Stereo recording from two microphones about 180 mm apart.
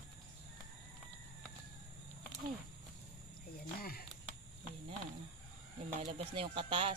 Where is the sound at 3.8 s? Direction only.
55° left (ahead or behind).